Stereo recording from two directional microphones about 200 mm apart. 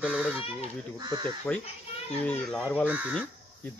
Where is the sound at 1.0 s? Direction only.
20° right (ahead or behind).